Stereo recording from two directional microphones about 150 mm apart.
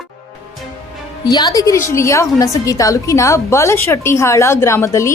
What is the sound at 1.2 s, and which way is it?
A woman's voice, 25° left (ahead or behind).